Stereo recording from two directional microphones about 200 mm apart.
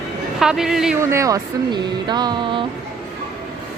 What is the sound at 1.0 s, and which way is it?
Speech, 15° right (ahead or behind).